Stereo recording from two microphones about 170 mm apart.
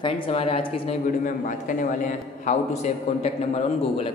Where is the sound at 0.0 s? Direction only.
35° left (ahead or behind).